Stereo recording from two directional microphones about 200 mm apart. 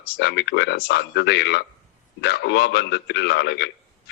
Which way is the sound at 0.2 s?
60° left (ahead or behind).